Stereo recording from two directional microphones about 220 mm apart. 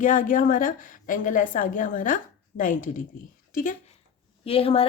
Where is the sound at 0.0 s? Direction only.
35° left (ahead or behind).